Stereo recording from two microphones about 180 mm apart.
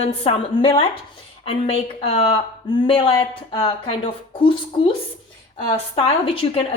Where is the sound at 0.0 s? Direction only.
35° left (ahead or behind).